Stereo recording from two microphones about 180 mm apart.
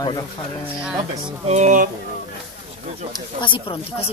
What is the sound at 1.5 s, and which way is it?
Speech, 45° right (ahead or behind).